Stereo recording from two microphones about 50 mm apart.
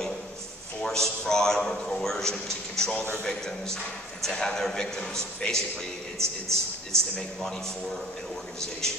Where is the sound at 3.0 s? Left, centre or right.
Left.